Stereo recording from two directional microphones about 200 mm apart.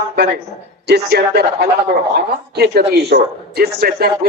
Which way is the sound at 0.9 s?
55° right (ahead or behind).